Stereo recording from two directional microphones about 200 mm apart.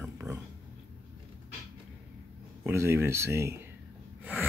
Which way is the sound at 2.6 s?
10° right (ahead or behind).